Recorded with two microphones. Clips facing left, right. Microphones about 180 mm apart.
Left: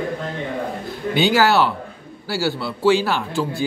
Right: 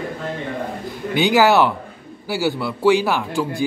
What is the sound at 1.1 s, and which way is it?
A man's voice, 15° right (ahead or behind).